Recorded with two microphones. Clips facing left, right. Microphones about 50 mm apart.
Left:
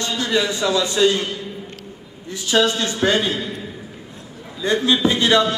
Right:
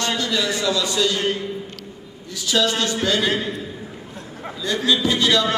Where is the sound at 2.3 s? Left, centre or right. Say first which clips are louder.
Left 2 dB; left.